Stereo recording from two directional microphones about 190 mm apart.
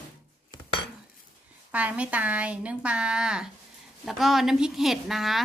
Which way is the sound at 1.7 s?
5° right (ahead or behind).